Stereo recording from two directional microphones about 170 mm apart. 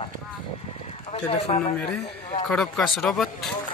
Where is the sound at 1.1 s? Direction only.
35° left (ahead or behind).